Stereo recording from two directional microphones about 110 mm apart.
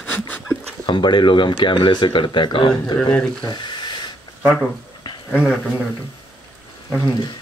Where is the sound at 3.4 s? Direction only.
45° left (ahead or behind).